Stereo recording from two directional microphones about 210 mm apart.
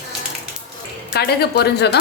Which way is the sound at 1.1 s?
50° left (ahead or behind).